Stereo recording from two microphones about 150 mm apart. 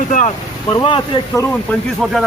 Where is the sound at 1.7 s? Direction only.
10° left (ahead or behind).